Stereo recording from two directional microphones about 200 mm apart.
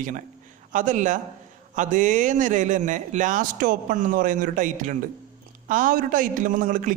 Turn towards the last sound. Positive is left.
turn(degrees=-40)  # may be behind; listen again after turning